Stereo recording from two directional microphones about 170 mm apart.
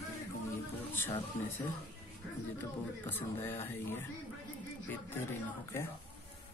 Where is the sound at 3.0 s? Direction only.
10° left (ahead or behind).